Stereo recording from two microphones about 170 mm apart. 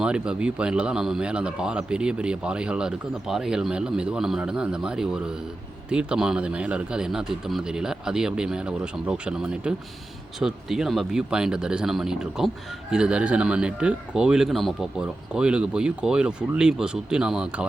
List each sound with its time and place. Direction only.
0.0 s a man's voice: 5° right (ahead or behind)